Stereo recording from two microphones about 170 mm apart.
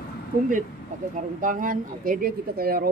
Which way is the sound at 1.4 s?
55° right (ahead or behind).